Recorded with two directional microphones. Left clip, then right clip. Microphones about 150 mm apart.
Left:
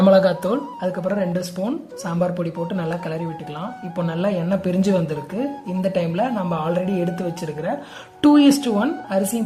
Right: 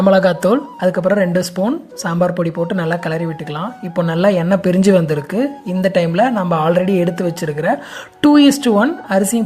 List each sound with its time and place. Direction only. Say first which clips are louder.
0.0 s speech: right 3 dB; 30° right (ahead or behind)